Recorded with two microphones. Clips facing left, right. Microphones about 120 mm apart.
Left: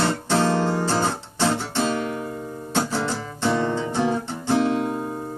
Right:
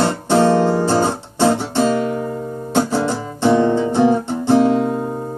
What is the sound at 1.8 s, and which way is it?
Music, 40° right (ahead or behind).